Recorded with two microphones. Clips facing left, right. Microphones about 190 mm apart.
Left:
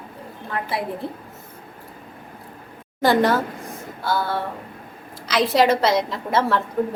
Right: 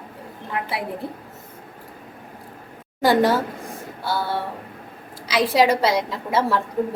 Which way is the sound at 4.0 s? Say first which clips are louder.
Left 2 dB; 15° right (ahead or behind).